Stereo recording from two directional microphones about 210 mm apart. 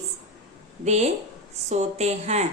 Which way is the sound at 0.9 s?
30° right (ahead or behind).